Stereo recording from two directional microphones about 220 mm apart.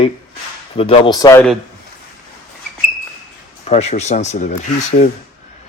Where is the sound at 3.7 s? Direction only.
30° left (ahead or behind).